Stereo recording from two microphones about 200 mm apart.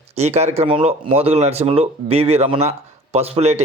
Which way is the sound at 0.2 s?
35° right (ahead or behind).